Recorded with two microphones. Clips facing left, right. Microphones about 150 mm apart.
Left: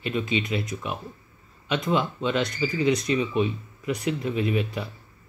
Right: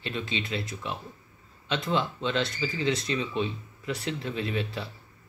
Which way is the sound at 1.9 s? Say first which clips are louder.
Left 2 dB; 10° left (ahead or behind).